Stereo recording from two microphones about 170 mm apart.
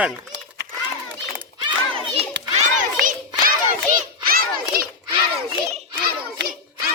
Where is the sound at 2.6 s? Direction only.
55° right (ahead or behind).